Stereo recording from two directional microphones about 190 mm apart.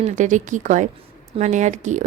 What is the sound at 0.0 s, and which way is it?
A woman's voice, 40° right (ahead or behind).